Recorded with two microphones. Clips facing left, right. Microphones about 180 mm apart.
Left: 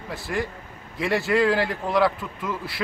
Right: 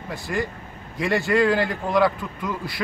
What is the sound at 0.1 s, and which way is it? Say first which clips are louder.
Speech: right 1 dB; centre (ahead or behind).